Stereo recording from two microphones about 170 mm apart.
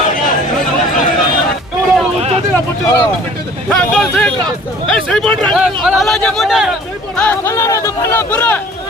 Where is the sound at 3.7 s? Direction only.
5° left (ahead or behind).